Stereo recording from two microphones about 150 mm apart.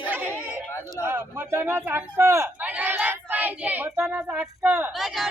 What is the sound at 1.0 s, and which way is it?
Speech, 15° right (ahead or behind).